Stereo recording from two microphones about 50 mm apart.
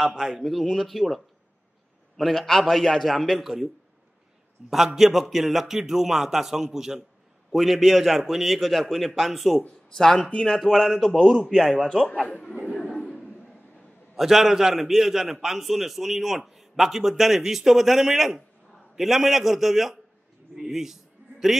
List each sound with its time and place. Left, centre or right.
0.0 s a man's voice: centre
4.6 s a man's voice: centre
10.6 s a man's voice: centre
14.1 s a man's voice: centre
20.5 s a sound: centre